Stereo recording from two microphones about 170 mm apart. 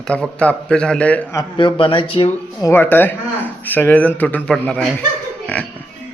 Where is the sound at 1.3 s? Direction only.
30° left (ahead or behind).